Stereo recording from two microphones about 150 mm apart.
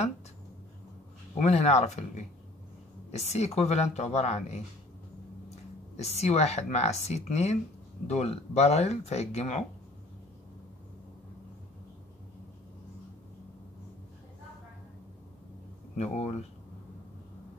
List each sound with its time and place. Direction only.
1.3 s speech: 50° left (ahead or behind)
5.9 s speech: 45° left (ahead or behind)
16.0 s speech: 45° left (ahead or behind)